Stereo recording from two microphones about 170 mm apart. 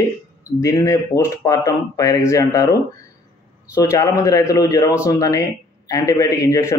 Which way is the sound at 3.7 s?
15° left (ahead or behind).